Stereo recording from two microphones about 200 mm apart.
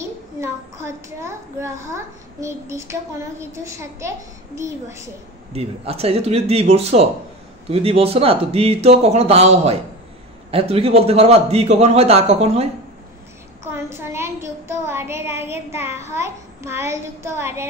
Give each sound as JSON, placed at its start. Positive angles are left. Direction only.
{"t": 0.4, "sound": "a child's voice", "side_deg": -15}
{"t": 5.5, "sound": "a man's voice", "side_deg": -30}
{"t": 13.7, "sound": "a woman's voice", "side_deg": -10}